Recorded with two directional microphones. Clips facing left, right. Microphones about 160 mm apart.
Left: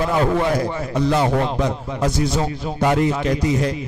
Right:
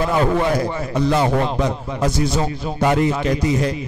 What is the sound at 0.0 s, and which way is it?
Speech, 15° right (ahead or behind).